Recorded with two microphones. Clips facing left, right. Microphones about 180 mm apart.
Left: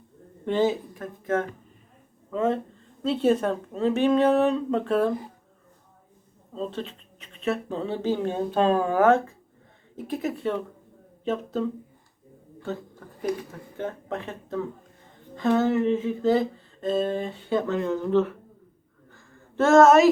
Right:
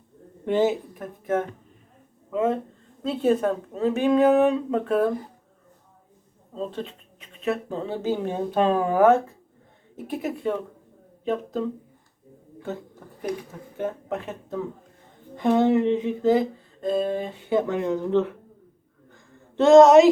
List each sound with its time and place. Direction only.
0.4 s speech: 15° right (ahead or behind)
6.5 s speech: 5° right (ahead or behind)
12.6 s a woman's voice: 10° right (ahead or behind)
16.9 s speech: centre (ahead or behind)
19.1 s a sound: 15° right (ahead or behind)